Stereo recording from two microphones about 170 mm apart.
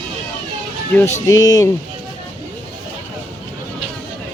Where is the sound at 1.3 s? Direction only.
20° left (ahead or behind).